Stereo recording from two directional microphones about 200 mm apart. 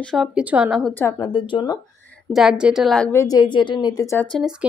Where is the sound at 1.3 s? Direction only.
25° left (ahead or behind).